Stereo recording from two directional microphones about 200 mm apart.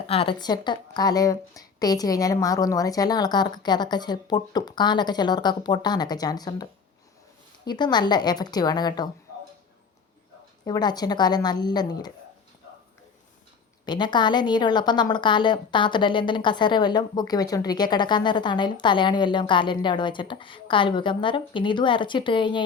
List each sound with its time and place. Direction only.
0.1 s a woman's voice: 25° left (ahead or behind)
10.7 s a woman's voice: 20° left (ahead or behind)
13.8 s a woman's voice: 20° left (ahead or behind)